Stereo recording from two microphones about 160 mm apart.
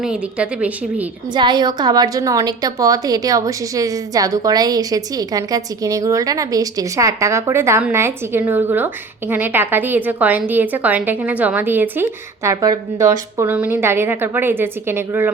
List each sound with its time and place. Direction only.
0.0 s a woman's voice: 5° right (ahead or behind)
1.3 s a woman's voice: 30° right (ahead or behind)